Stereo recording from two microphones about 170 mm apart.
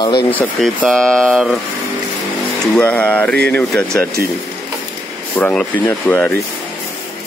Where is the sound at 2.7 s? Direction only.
5° left (ahead or behind).